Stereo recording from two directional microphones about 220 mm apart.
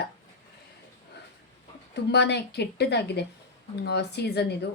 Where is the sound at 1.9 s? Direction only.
50° left (ahead or behind).